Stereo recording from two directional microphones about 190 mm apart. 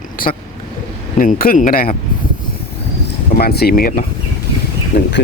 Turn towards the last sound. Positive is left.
turn(degrees=60)  # may be behind; listen again after turning